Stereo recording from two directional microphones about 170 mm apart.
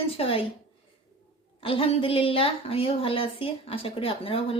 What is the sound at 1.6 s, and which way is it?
A woman's voice, 35° left (ahead or behind).